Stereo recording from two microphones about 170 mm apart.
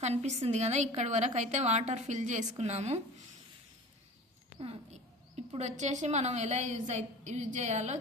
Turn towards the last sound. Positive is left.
turn(degrees=-45)  # may be behind; listen again after turning